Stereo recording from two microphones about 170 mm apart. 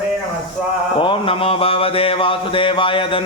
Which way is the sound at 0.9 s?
30° left (ahead or behind).